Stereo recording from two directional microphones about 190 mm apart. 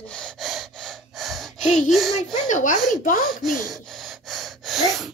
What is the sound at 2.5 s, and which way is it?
Speech, 40° left (ahead or behind).